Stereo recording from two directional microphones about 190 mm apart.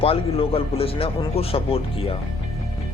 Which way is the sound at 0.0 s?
30° left (ahead or behind).